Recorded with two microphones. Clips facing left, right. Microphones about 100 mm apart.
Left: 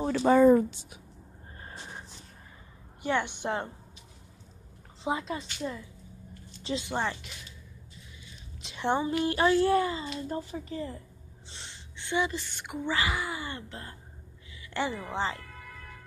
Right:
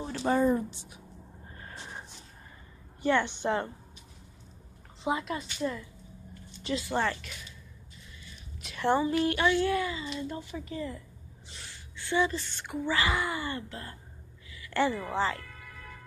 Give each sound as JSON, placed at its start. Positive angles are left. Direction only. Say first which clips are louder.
{"t": 0.0, "sound": "speech", "louder": "left 6 dB", "side_deg": 80}
{"t": 3.0, "sound": "speech", "louder": "right 3 dB", "side_deg": 15}
{"t": 5.0, "sound": "a woman's voice", "louder": "right 1 dB", "side_deg": 30}
{"t": 8.6, "sound": "a child's voice", "louder": "right 2 dB", "side_deg": 20}
{"t": 13.1, "sound": "speech", "louder": "right 3 dB", "side_deg": 5}
{"t": 13.5, "sound": "a woman's voice", "louder": "right 3 dB", "side_deg": 25}